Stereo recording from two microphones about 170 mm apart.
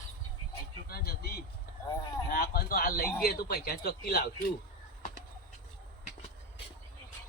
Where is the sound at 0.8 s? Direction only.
65° left (ahead or behind).